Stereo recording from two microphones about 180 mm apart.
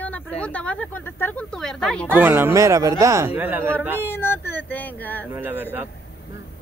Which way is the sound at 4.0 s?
10° left (ahead or behind).